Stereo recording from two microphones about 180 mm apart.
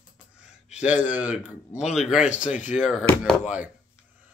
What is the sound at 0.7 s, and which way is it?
Speech, 10° right (ahead or behind).